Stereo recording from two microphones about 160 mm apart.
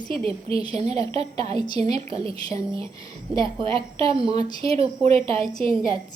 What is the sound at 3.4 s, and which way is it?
Speech, 35° right (ahead or behind).